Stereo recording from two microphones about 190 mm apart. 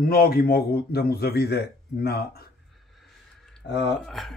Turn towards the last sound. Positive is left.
turn(degrees=0)  # may be behind; listen again after turning